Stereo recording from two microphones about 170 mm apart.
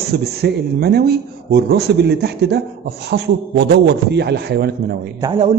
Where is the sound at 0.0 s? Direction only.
70° right (ahead or behind).